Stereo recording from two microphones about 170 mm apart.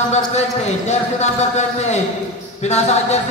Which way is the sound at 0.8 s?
40° left (ahead or behind).